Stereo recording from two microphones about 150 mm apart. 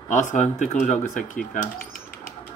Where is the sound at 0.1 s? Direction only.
55° left (ahead or behind).